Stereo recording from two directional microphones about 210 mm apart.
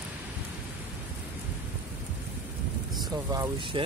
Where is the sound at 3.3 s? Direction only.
15° right (ahead or behind).